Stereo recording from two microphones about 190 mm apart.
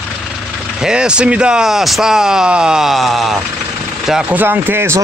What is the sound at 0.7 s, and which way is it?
Speech, 5° right (ahead or behind).